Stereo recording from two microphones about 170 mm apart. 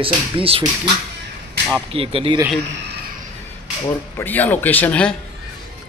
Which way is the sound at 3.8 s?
10° left (ahead or behind).